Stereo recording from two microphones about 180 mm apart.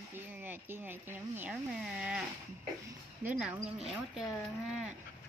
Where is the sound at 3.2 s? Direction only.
5° right (ahead or behind).